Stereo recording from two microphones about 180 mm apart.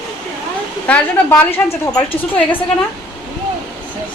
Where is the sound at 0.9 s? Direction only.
10° left (ahead or behind).